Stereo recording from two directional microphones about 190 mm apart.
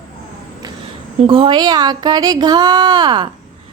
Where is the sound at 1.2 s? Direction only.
25° right (ahead or behind).